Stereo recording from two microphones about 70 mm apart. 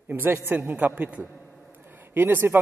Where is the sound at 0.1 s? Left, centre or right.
Right.